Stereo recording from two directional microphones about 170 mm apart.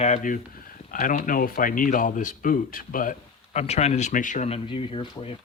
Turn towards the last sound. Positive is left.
turn(degrees=30)  # may be behind; listen again after turning